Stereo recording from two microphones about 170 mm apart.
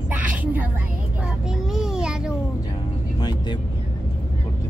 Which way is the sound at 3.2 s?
25° left (ahead or behind).